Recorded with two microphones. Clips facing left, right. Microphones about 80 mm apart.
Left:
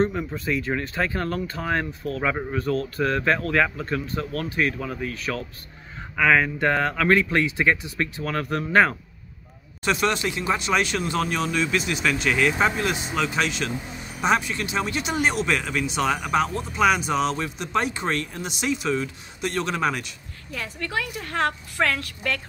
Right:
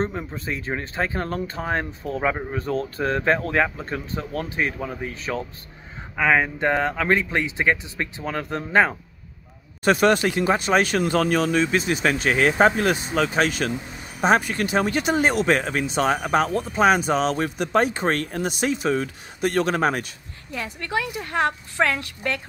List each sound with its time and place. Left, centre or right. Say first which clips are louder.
0.0 s speech: left 3 dB; right
9.8 s speech: right 5 dB; right
20.5 s speech: right 2 dB; right